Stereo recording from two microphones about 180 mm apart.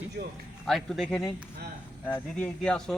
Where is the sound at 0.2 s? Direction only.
60° right (ahead or behind).